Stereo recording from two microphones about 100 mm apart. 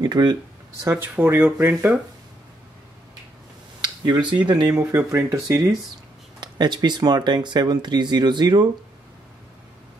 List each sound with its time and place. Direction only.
0.0 s speech: 45° right (ahead or behind)
0.8 s speech: 25° right (ahead or behind)
3.8 s a sound: 50° right (ahead or behind)
4.3 s speech: 45° right (ahead or behind)
4.9 s speech: 30° right (ahead or behind)
6.4 s speech: 45° right (ahead or behind)